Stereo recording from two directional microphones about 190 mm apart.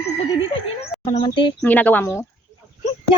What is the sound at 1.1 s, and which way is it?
Speech, 25° left (ahead or behind).